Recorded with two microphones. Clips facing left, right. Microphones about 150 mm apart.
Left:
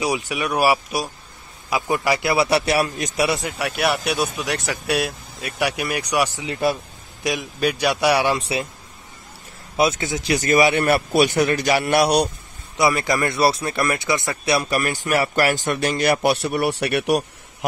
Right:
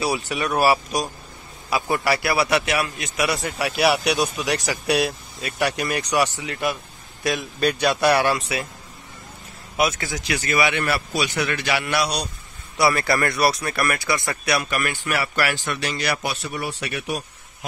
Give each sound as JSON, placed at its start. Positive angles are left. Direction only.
{"t": 0.0, "sound": "a man's voice", "side_deg": 15}
{"t": 3.4, "sound": "speech", "side_deg": 0}
{"t": 6.4, "sound": "speech", "side_deg": 30}
{"t": 7.2, "sound": "speech", "side_deg": 10}
{"t": 8.4, "sound": "speech", "side_deg": 30}
{"t": 9.8, "sound": "a man's voice", "side_deg": 25}
{"t": 10.2, "sound": "a man's voice", "side_deg": 45}
{"t": 12.0, "sound": "a man's voice", "side_deg": 60}
{"t": 12.7, "sound": "speech", "side_deg": 20}